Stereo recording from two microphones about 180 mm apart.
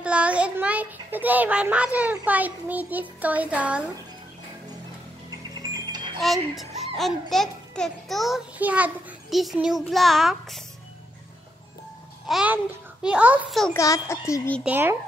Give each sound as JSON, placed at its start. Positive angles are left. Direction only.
{"t": 0.0, "sound": "a child's voice", "side_deg": -5}
{"t": 5.5, "sound": "music", "side_deg": -20}
{"t": 6.5, "sound": "a child's voice", "side_deg": 0}
{"t": 12.3, "sound": "a child's voice", "side_deg": -5}
{"t": 13.7, "sound": "a child's voice", "side_deg": 15}
{"t": 14.6, "sound": "speech", "side_deg": -10}